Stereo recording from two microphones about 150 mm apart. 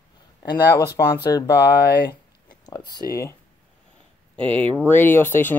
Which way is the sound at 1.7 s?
90° left.